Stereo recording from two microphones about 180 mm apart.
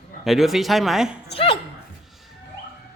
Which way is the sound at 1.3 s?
30° left (ahead or behind).